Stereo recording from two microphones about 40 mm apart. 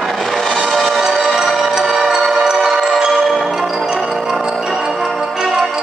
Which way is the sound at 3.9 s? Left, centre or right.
Centre.